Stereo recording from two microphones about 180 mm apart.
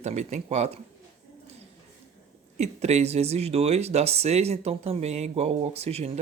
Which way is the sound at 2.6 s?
35° right (ahead or behind).